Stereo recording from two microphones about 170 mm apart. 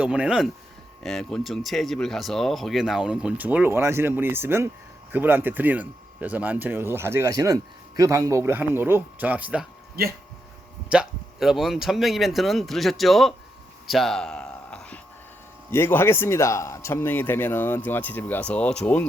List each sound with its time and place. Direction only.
0.0 s speech: 5° right (ahead or behind)
10.0 s speech: 60° right (ahead or behind)
10.8 s speech: 5° right (ahead or behind)
13.8 s a sound: centre (ahead or behind)
15.7 s speech: 15° left (ahead or behind)